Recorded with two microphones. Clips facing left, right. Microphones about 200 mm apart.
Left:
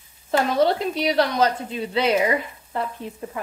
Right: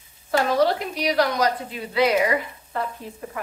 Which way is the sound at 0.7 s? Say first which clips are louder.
Left 2 dB; 25° left (ahead or behind).